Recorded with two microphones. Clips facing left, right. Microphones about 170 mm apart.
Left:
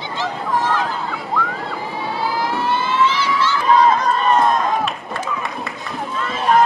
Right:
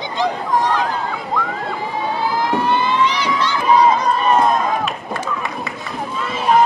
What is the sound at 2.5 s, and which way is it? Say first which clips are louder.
Crowd: right 2 dB; 15° right (ahead or behind).